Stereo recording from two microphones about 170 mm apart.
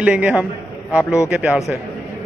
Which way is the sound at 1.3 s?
5° right (ahead or behind).